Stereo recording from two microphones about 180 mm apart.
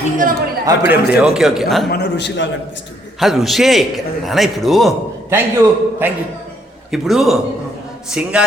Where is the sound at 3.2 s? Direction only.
Centre (ahead or behind).